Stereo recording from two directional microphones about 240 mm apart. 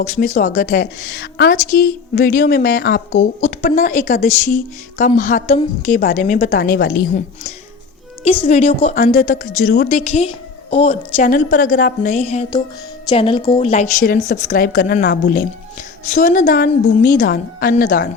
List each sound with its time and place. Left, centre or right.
0.0 s a woman's voice: left
8.2 s a woman's voice: left
9.1 s a woman's voice: left
10.0 s a woman's voice: left
14.0 s a woman's voice: left